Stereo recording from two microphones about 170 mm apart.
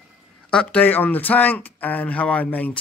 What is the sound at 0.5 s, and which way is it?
Speech, 5° left (ahead or behind).